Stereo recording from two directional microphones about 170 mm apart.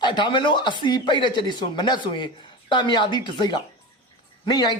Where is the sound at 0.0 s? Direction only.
25° left (ahead or behind).